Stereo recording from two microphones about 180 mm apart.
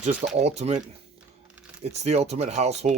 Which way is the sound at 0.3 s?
35° right (ahead or behind).